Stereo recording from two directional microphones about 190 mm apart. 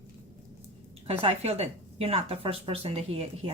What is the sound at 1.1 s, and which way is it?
Speech, 30° right (ahead or behind).